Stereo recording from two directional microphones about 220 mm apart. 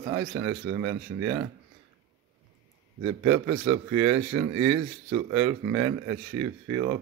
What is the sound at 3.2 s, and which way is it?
Speech, 10° right (ahead or behind).